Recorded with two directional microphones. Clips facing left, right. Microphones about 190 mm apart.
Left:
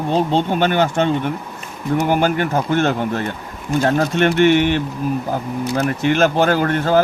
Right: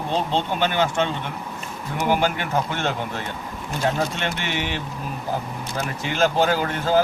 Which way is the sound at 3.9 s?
55° left (ahead or behind).